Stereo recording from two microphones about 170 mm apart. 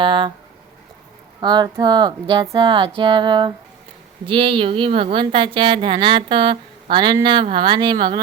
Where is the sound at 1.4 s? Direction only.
25° right (ahead or behind).